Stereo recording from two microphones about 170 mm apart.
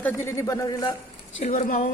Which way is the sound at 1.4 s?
50° left (ahead or behind).